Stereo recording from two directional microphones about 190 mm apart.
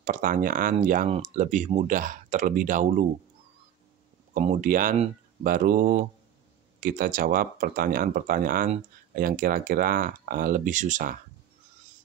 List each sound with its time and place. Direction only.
0.0 s speech: 45° right (ahead or behind)
4.3 s speech: 45° right (ahead or behind)